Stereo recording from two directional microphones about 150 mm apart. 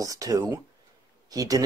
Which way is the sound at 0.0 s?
25° right (ahead or behind).